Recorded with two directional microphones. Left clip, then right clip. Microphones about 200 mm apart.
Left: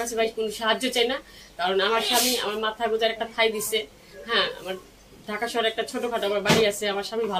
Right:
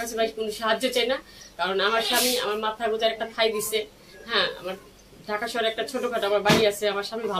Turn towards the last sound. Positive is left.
turn(degrees=5)  # may be behind; listen again after turning